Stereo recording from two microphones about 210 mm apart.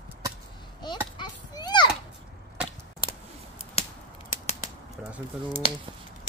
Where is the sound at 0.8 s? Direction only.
20° left (ahead or behind).